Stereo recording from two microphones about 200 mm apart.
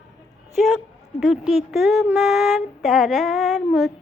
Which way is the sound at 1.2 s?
Centre (ahead or behind).